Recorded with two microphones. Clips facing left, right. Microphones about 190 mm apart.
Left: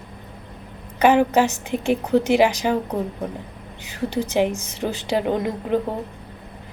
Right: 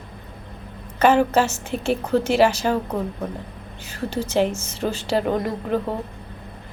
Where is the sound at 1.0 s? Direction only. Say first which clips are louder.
Left 1 dB; 15° left (ahead or behind).